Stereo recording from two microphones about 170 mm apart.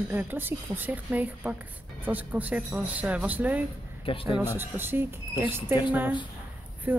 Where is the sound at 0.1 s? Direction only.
10° right (ahead or behind).